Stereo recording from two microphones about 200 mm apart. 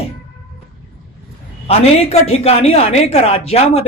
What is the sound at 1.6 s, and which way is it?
Speech, 30° left (ahead or behind).